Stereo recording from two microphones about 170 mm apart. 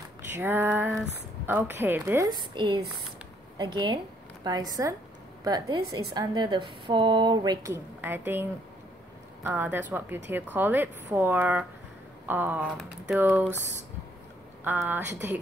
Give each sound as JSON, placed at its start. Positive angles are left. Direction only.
{"t": 0.4, "sound": "a woman's voice", "side_deg": -10}
{"t": 9.4, "sound": "speech", "side_deg": -15}
{"t": 14.6, "sound": "speech", "side_deg": -10}